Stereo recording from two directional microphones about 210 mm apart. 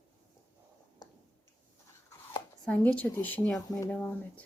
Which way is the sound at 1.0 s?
20° left (ahead or behind).